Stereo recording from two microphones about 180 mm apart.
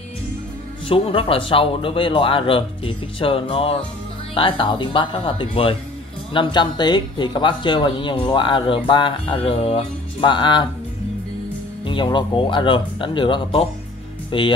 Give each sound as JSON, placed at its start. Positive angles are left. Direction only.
{"t": 0.8, "sound": "speech", "side_deg": 30}
{"t": 11.8, "sound": "speech", "side_deg": 25}